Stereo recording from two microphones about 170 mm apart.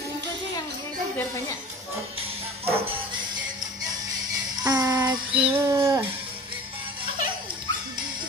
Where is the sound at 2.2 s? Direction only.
35° right (ahead or behind).